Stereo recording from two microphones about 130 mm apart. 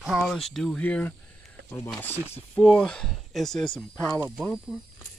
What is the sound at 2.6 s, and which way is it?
Speech, 5° left (ahead or behind).